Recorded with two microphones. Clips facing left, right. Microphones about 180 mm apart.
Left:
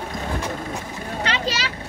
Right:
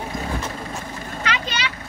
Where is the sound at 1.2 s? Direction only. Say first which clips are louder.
Left 1 dB; 35° left (ahead or behind).